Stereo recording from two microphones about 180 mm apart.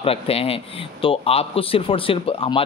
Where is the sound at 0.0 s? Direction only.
35° left (ahead or behind).